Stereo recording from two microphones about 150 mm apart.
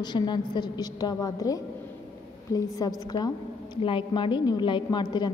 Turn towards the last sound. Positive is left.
turn(degrees=30)  # may be behind; listen again after turning